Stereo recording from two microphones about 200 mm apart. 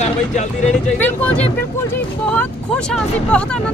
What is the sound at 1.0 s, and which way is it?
Speech, 5° left (ahead or behind).